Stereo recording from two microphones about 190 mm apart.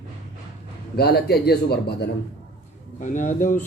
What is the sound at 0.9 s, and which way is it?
Speech, 55° left (ahead or behind).